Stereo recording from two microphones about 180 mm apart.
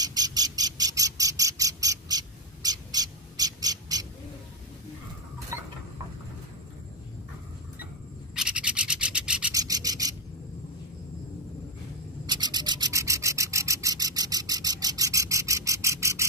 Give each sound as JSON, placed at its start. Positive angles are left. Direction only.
{"t": 0.0, "sound": "bird", "side_deg": -20}
{"t": 5.5, "sound": "a sound", "side_deg": -15}
{"t": 8.4, "sound": "rub", "side_deg": -5}
{"t": 9.5, "sound": "rub", "side_deg": -20}
{"t": 12.3, "sound": "rub", "side_deg": -25}